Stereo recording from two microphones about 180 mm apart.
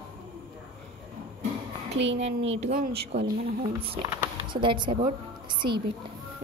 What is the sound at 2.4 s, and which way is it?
Speech, 90° right.